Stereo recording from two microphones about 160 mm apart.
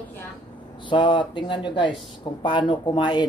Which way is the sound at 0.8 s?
30° left (ahead or behind).